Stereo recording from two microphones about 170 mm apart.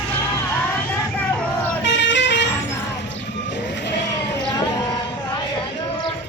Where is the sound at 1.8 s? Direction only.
90° left.